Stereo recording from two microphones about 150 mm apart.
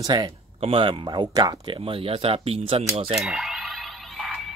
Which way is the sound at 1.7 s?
40° right (ahead or behind).